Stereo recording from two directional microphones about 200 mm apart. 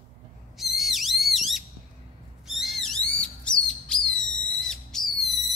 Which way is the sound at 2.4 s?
Centre (ahead or behind).